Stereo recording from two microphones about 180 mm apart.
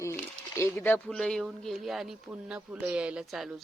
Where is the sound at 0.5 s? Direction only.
10° left (ahead or behind).